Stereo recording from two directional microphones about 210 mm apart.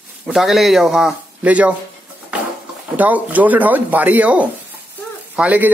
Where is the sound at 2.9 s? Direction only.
5° right (ahead or behind).